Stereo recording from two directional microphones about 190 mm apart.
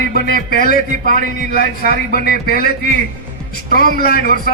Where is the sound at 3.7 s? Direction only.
45° right (ahead or behind).